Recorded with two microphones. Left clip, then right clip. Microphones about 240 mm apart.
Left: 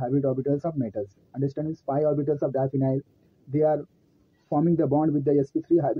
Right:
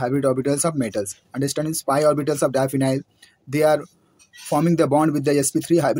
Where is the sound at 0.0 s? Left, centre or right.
Right.